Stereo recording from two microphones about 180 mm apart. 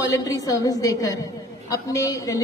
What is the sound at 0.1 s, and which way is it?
A woman's voice, 20° left (ahead or behind).